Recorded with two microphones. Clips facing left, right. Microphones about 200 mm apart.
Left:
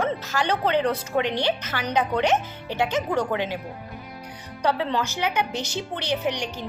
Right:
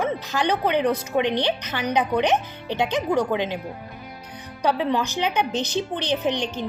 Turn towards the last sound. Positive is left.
turn(degrees=-20)  # may be behind; listen again after turning